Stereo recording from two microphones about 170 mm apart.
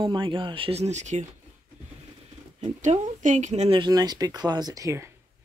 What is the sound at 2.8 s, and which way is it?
Speech, 45° right (ahead or behind).